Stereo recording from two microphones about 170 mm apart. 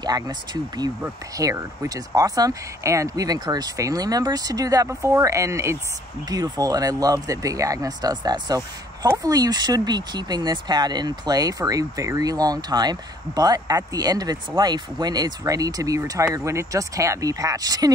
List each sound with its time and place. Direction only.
0.0 s speech: 25° right (ahead or behind)